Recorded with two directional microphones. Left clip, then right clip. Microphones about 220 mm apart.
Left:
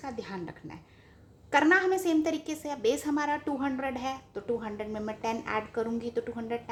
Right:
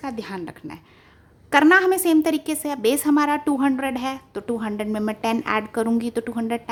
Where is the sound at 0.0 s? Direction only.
35° right (ahead or behind).